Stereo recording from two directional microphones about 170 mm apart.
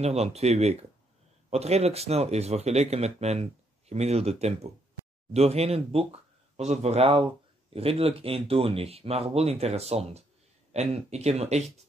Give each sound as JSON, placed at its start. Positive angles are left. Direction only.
{"t": 0.0, "sound": "speech", "side_deg": -40}